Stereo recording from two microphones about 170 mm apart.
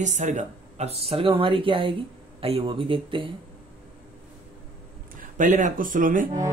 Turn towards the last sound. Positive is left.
turn(degrees=-55)  # may be behind; listen again after turning